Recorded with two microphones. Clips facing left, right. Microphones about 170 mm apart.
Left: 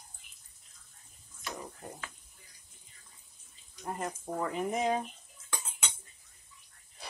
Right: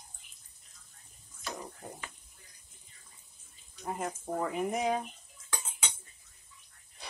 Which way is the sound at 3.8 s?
5° right (ahead or behind).